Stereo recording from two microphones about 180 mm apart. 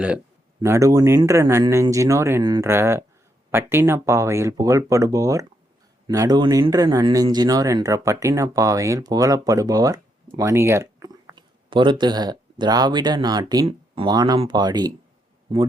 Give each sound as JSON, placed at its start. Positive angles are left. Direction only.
{"t": 0.6, "sound": "speech", "side_deg": -15}